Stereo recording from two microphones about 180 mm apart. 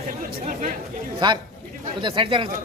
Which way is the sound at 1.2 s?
25° right (ahead or behind).